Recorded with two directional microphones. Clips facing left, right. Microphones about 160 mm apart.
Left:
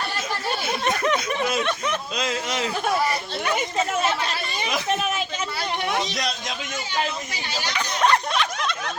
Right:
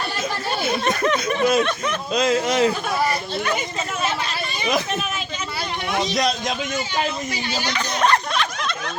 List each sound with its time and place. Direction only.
0.9 s speech: 15° left (ahead or behind)
1.4 s speech: 45° right (ahead or behind)
7.7 s speech: 10° left (ahead or behind)